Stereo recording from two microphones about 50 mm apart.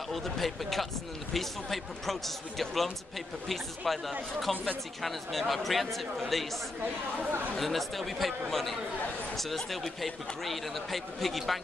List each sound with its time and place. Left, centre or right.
0.1 s speech: centre
7.2 s speech: right
7.5 s speech: centre